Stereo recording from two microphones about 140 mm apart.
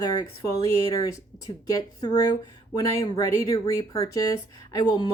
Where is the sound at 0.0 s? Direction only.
25° left (ahead or behind).